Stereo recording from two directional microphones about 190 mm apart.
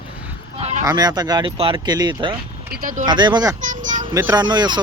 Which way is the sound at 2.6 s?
50° right (ahead or behind).